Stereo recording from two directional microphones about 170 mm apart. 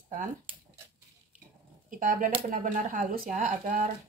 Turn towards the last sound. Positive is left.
turn(degrees=-50)  # may be behind; listen again after turning